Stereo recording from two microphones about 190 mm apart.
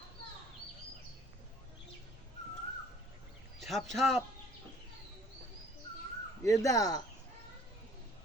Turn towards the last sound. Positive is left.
turn(degrees=20)  # may be behind; listen again after turning